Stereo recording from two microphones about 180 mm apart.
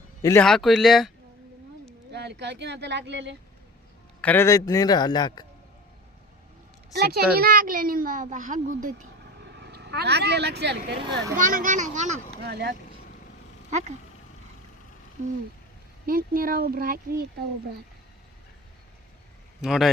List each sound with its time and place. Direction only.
0.2 s speech: 15° left (ahead or behind)
0.4 s speech: centre (ahead or behind)
2.1 s speech: 70° right (ahead or behind)
4.2 s a man's voice: 10° left (ahead or behind)
6.9 s a child's voice: 60° right (ahead or behind)
9.4 s speech: 70° right (ahead or behind)
11.3 s a child's voice: 50° right (ahead or behind)
12.5 s speech: 65° right (ahead or behind)
13.7 s speech: 40° right (ahead or behind)
16.0 s a child's voice: 55° right (ahead or behind)
19.6 s speech: centre (ahead or behind)